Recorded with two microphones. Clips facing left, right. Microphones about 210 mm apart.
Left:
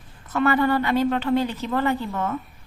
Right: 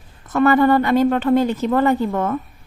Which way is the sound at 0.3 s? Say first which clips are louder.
Right 6 dB; 45° right (ahead or behind).